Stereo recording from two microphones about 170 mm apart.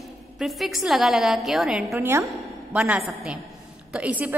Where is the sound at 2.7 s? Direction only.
5° right (ahead or behind).